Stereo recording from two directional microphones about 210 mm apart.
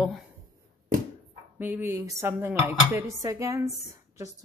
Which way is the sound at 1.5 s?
10° right (ahead or behind).